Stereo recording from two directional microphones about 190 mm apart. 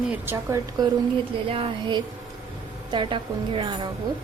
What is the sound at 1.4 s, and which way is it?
A woman's voice, 30° right (ahead or behind).